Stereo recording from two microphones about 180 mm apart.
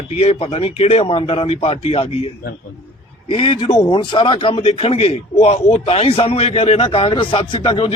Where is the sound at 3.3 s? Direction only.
30° left (ahead or behind).